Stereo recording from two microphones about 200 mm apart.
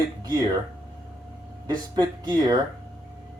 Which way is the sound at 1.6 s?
20° right (ahead or behind).